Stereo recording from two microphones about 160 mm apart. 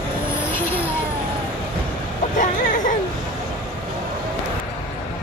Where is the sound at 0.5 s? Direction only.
10° left (ahead or behind).